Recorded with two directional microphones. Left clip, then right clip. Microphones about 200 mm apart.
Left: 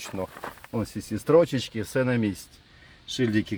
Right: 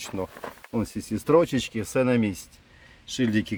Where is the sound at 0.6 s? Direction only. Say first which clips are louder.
Right 2 dB; 5° right (ahead or behind).